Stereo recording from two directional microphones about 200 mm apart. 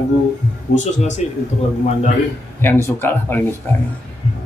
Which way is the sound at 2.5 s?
10° left (ahead or behind).